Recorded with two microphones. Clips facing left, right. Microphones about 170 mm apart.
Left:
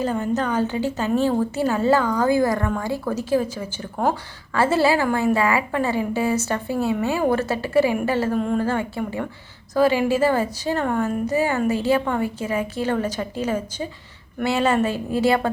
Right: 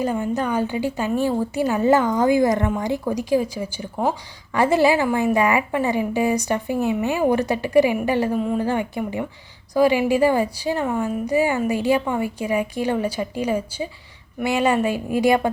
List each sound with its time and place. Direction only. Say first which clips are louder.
0.0 s a woman's voice: even; 10° right (ahead or behind)